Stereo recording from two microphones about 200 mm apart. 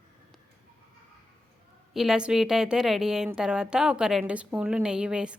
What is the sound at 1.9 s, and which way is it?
A woman's voice, centre (ahead or behind).